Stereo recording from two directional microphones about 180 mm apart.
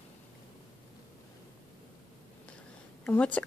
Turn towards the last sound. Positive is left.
turn(degrees=10)  # may be behind; listen again after turning